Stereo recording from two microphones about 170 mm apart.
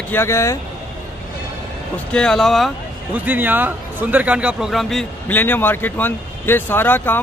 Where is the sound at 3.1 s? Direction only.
10° right (ahead or behind); by 7.2 s 10° left (ahead or behind).